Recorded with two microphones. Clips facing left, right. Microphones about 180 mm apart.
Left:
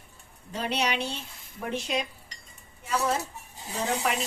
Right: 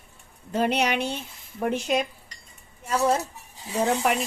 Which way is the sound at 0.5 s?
50° right (ahead or behind).